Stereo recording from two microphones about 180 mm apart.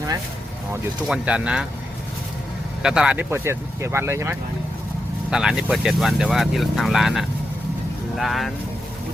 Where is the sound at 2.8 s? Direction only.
5° right (ahead or behind).